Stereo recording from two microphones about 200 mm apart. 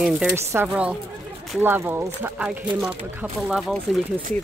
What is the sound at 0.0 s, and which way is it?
Speech, 5° right (ahead or behind).